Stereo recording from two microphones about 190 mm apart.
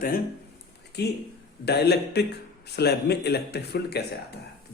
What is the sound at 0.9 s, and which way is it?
Speech, 60° left (ahead or behind).